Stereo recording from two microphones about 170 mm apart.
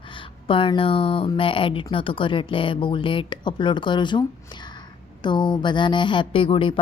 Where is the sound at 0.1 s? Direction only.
30° left (ahead or behind).